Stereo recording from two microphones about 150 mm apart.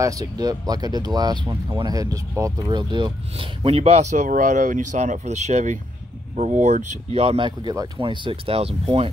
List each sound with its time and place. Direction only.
0.0 s speech: 25° right (ahead or behind); by 9.1 s 40° right (ahead or behind)